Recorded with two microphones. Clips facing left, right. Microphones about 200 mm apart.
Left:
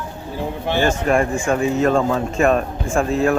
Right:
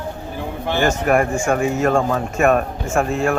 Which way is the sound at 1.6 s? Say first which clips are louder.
Left 2 dB; 35° left (ahead or behind).